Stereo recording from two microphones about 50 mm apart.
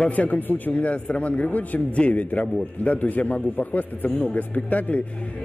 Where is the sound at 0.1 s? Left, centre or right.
Left.